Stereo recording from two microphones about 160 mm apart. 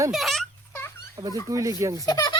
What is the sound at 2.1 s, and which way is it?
Speech, 25° left (ahead or behind).